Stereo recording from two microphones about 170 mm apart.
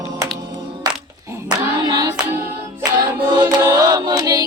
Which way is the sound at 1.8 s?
25° right (ahead or behind).